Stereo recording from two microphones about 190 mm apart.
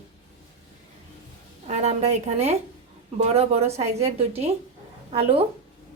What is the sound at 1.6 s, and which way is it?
Speech, 35° right (ahead or behind).